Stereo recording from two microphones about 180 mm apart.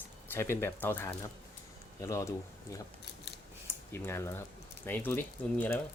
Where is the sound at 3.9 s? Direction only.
15° left (ahead or behind).